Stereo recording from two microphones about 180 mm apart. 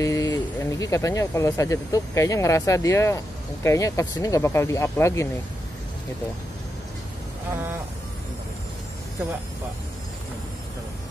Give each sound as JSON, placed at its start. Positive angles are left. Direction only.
{"t": 0.0, "sound": "speech", "side_deg": 20}